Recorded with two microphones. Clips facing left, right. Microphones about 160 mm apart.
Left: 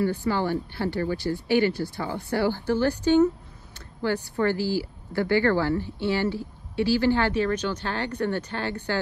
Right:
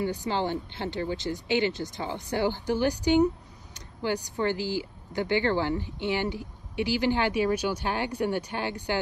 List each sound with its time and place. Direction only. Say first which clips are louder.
0.0 s speech: left 3 dB; 20° right (ahead or behind)
3.7 s a sound: left 3 dB; 15° right (ahead or behind)
4.5 s speech: left 3 dB; 20° right (ahead or behind)